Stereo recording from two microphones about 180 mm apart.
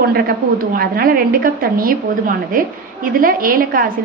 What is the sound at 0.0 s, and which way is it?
A woman's voice, 55° right (ahead or behind).